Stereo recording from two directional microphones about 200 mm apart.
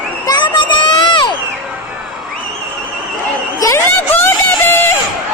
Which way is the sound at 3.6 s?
15° left (ahead or behind).